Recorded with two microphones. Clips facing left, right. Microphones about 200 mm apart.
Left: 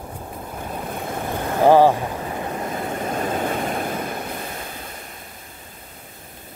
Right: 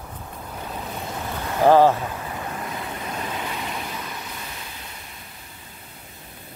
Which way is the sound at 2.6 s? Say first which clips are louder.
Left 6 dB; 50° left (ahead or behind).